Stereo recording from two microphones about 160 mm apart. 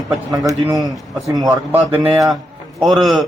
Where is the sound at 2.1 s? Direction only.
Centre (ahead or behind).